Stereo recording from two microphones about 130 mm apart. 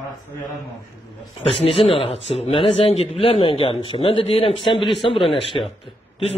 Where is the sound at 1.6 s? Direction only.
50° left (ahead or behind).